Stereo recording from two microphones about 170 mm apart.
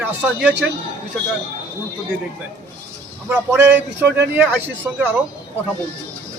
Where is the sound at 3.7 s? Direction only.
85° right.